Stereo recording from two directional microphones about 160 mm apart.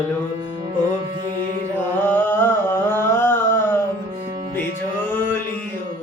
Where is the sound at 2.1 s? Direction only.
15° left (ahead or behind).